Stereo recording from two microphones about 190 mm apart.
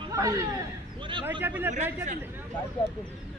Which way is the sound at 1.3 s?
10° right (ahead or behind).